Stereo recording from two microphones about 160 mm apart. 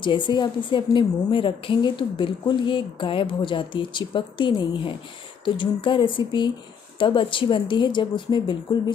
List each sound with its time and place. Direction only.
0.0 s a woman's voice: 30° left (ahead or behind)